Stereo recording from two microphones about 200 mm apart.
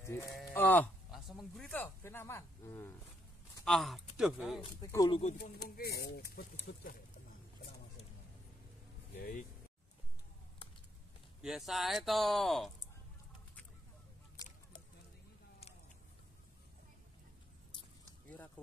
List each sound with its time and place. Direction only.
0.0 s speech: 15° left (ahead or behind)
1.1 s a sound: centre (ahead or behind)
3.6 s speech: centre (ahead or behind)
4.9 s speech: 15° left (ahead or behind)
5.4 s speech: 50° left (ahead or behind)
11.4 s speech: centre (ahead or behind)